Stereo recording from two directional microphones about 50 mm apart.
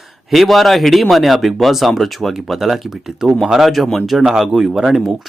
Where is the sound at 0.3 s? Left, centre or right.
Centre.